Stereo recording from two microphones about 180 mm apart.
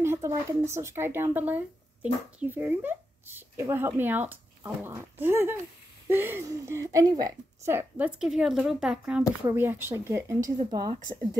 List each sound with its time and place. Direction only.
0.0 s speech: 15° right (ahead or behind)